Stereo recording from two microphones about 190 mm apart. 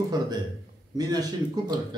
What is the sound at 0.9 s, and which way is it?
Speech, 20° right (ahead or behind).